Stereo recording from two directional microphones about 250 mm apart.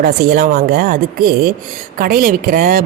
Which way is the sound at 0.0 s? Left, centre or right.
Right.